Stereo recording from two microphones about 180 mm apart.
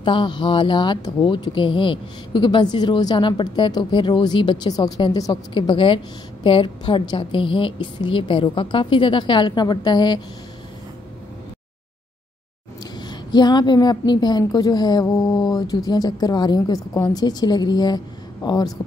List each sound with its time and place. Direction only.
0.0 s speech: 25° left (ahead or behind)
13.0 s speech: 25° left (ahead or behind)